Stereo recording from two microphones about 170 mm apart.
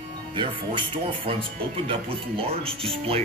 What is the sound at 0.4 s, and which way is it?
Speech, 30° right (ahead or behind).